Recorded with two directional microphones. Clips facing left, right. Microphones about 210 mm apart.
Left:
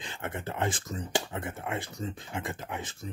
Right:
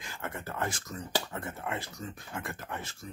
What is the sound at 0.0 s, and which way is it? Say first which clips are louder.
Speech: left 3 dB; 25° left (ahead or behind).